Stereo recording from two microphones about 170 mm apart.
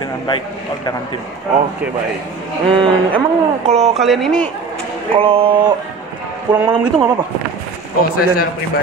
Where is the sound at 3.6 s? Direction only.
35° right (ahead or behind).